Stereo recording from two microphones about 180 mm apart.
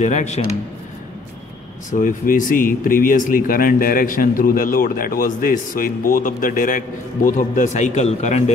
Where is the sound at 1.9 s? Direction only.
45° left (ahead or behind).